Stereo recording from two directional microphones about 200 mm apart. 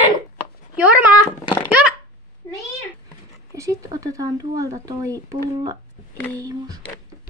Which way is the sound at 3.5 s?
15° right (ahead or behind).